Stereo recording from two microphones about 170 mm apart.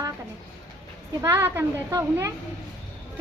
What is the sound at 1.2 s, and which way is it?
A woman's voice, 15° right (ahead or behind).